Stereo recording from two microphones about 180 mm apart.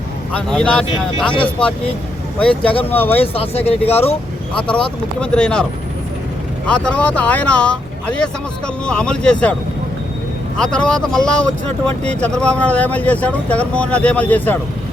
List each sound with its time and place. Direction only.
0.3 s speech: 5° left (ahead or behind)
2.4 s speech: 5° left (ahead or behind)
3.3 s speech: 35° left (ahead or behind)
4.5 s speech: 5° left (ahead or behind)
6.7 s speech: 5° left (ahead or behind)
10.6 s speech: 5° left (ahead or behind)